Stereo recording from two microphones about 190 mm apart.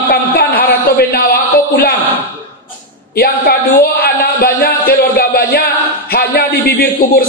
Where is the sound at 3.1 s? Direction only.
55° left (ahead or behind).